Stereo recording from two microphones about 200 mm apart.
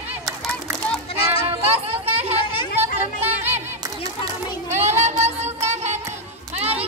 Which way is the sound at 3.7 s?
15° right (ahead or behind).